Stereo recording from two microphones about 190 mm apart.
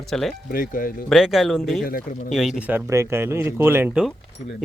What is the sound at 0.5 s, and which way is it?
Speech, 45° left (ahead or behind).